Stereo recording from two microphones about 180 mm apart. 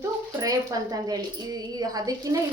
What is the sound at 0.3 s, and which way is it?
A woman's voice, 20° right (ahead or behind).